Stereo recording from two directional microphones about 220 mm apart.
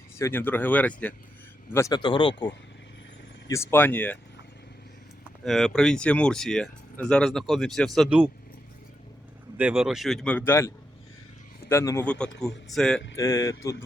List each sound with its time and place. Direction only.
0.2 s speech: 10° left (ahead or behind)
5.5 s speech: centre (ahead or behind)
9.6 s speech: 5° right (ahead or behind); by 10.7 s 10° left (ahead or behind)
11.7 s speech: 10° left (ahead or behind)
13.1 s speech: 10° left (ahead or behind)